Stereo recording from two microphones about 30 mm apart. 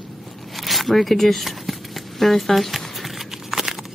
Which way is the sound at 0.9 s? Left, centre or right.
Centre.